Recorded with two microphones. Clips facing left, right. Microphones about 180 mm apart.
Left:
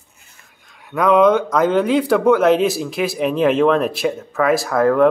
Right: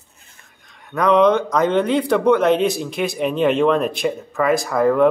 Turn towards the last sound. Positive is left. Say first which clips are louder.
# left 1 dB
turn(degrees=0)  # may be behind; listen again after turning